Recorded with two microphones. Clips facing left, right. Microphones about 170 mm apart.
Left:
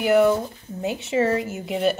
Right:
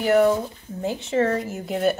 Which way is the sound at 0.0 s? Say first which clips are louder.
Even; 5° left (ahead or behind).